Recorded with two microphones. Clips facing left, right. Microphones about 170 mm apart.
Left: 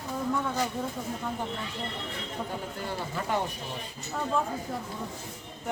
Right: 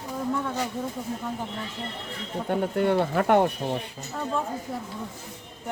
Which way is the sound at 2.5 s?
65° right (ahead or behind).